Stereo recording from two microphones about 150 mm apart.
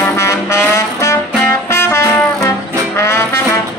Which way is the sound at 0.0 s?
20° left (ahead or behind).